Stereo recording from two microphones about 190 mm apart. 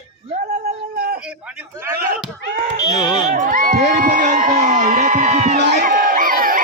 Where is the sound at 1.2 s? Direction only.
5° right (ahead or behind).